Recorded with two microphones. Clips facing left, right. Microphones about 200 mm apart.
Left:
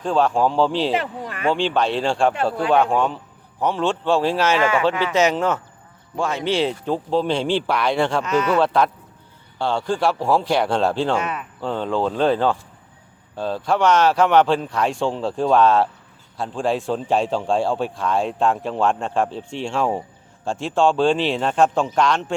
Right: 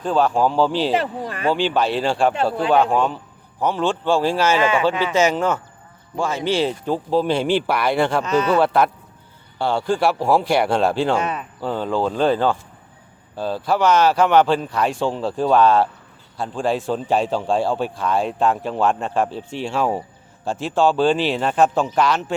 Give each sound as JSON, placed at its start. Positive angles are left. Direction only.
{"t": 0.0, "sound": "speech", "side_deg": 0}
{"t": 0.9, "sound": "speech", "side_deg": -35}
{"t": 1.5, "sound": "speech", "side_deg": -5}
{"t": 4.6, "sound": "speech", "side_deg": -20}
{"t": 5.1, "sound": "speech", "side_deg": 0}
{"t": 8.2, "sound": "speech", "side_deg": -30}
{"t": 8.5, "sound": "speech", "side_deg": -10}
{"t": 11.2, "sound": "speech", "side_deg": -30}
{"t": 11.6, "sound": "speech", "side_deg": -5}